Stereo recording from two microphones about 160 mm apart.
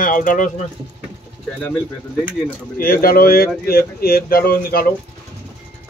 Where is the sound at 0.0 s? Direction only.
55° left (ahead or behind).